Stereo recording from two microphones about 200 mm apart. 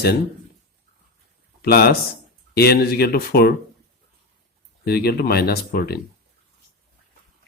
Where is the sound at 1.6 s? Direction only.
50° left (ahead or behind).